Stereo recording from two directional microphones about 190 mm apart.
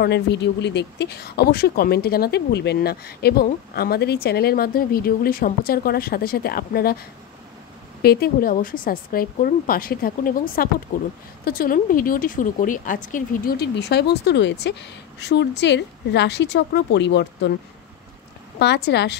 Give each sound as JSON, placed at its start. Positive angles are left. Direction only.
{"t": 0.0, "sound": "speech", "side_deg": 65}
{"t": 8.0, "sound": "a woman's voice", "side_deg": 55}
{"t": 18.6, "sound": "speech", "side_deg": 60}